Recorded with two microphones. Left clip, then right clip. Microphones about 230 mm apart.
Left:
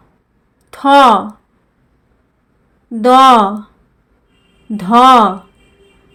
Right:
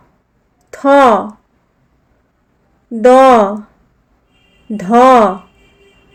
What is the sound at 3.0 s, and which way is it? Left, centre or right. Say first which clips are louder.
Speech: right 1 dB; centre.